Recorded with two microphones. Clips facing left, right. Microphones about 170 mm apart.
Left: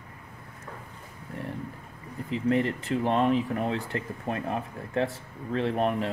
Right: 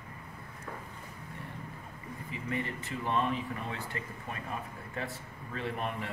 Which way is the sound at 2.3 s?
90° left.